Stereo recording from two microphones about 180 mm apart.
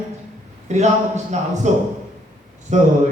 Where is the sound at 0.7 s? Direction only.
40° right (ahead or behind).